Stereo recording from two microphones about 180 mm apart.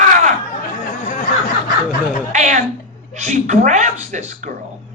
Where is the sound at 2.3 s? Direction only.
40° right (ahead or behind).